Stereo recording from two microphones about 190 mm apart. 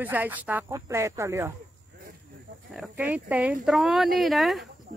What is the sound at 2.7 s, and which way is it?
Speech, 5° right (ahead or behind).